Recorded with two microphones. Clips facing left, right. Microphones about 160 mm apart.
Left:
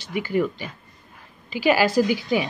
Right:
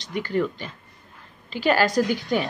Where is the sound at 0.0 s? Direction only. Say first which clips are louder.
Left 1 dB; 10° left (ahead or behind).